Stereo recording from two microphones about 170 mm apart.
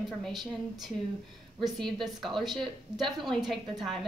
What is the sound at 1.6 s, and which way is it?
A woman's voice, centre (ahead or behind).